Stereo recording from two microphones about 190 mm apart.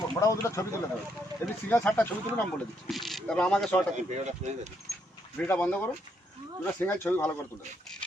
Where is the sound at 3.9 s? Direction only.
35° right (ahead or behind).